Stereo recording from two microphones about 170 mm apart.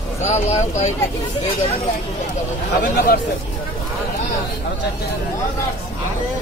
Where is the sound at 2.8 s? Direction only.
60° left (ahead or behind).